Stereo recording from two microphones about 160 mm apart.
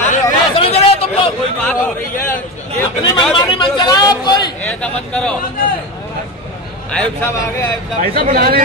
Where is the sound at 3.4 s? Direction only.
30° left (ahead or behind).